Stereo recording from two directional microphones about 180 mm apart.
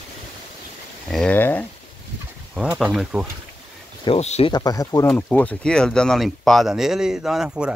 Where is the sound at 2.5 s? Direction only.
5° right (ahead or behind).